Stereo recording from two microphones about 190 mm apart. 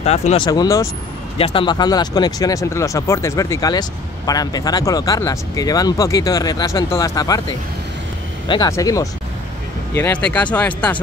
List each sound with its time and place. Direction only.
0.0 s speech: 35° left (ahead or behind)
0.5 s speech: 15° left (ahead or behind)